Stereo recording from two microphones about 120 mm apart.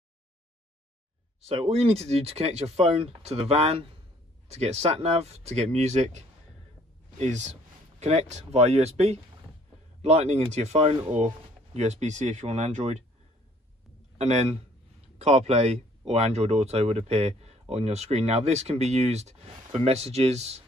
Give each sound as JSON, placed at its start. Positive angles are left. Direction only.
{"t": 1.4, "sound": "speech", "side_deg": -55}
{"t": 8.0, "sound": "speech", "side_deg": -65}
{"t": 14.1, "sound": "a man's voice", "side_deg": -65}